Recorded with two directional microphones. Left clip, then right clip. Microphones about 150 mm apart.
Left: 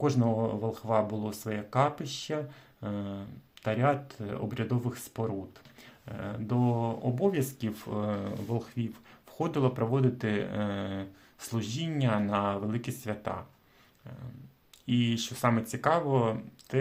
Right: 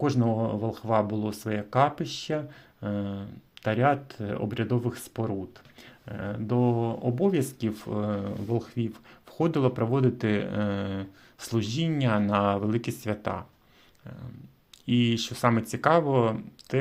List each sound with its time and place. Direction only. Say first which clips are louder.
0.0 s speech: right 2 dB; 25° right (ahead or behind)
14.8 s speech: right 4 dB; 30° right (ahead or behind)